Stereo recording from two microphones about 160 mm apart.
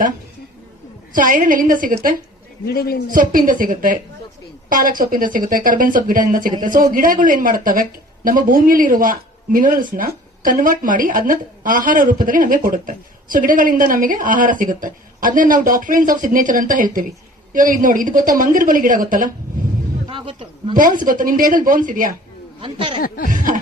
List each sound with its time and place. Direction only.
1.1 s speech: 60° right (ahead or behind)
2.6 s a man's voice: 70° left (ahead or behind)
3.1 s speech: 60° right (ahead or behind)
20.1 s a man's voice: 35° right (ahead or behind)
20.7 s speech: 55° right (ahead or behind)
22.6 s speech: 30° right (ahead or behind)
23.0 s speech: 65° left (ahead or behind)
23.3 s speech: 55° right (ahead or behind)